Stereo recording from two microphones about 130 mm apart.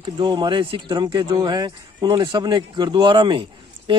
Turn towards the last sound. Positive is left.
turn(degrees=-35)  # may be behind; listen again after turning